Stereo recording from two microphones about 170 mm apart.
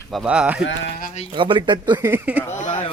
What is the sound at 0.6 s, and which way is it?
Speech, 90° left.